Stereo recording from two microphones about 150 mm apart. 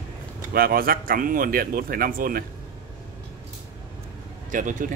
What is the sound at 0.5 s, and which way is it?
Speech, 75° right (ahead or behind).